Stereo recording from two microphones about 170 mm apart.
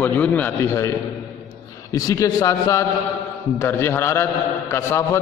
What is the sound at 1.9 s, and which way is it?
A man's voice, 20° left (ahead or behind).